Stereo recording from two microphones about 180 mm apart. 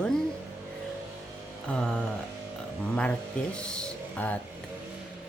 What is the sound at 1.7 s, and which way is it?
Speech, 5° left (ahead or behind).